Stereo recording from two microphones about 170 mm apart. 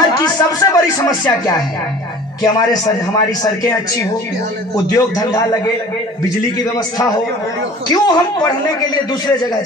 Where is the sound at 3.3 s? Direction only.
20° left (ahead or behind).